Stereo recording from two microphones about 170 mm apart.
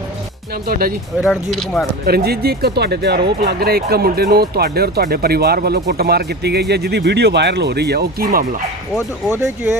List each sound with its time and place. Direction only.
0.7 s speech: 60° right (ahead or behind)
1.2 s speech: centre (ahead or behind)
2.0 s speech: 65° right (ahead or behind)